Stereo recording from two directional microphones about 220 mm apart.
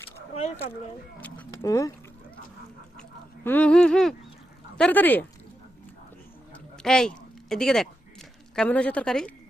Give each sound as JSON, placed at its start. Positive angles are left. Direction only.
{"t": 0.3, "sound": "speech", "side_deg": 30}
{"t": 1.2, "sound": "speech", "side_deg": 10}
{"t": 3.0, "sound": "honk", "side_deg": 5}
{"t": 4.8, "sound": "speech", "side_deg": 10}
{"t": 6.8, "sound": "a woman's voice", "side_deg": 0}